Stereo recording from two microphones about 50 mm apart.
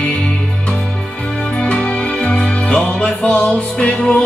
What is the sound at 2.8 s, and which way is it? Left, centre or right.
Music, centre.